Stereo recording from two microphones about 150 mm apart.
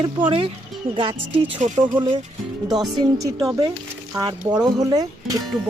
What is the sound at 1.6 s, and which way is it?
Speech, 55° right (ahead or behind).